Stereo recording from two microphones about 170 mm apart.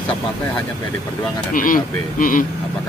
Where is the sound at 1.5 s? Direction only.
50° left (ahead or behind).